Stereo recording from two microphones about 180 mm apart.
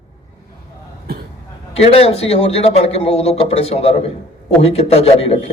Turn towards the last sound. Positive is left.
turn(degrees=35)  # may be behind; listen again after turning